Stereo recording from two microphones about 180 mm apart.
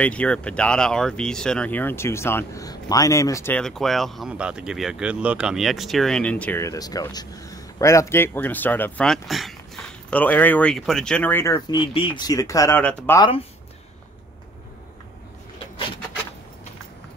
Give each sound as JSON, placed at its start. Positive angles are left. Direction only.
{"t": 0.0, "sound": "speech", "side_deg": 5}
{"t": 3.6, "sound": "speech", "side_deg": 0}